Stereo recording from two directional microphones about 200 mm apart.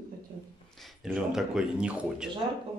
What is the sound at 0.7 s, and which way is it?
Speech, centre (ahead or behind).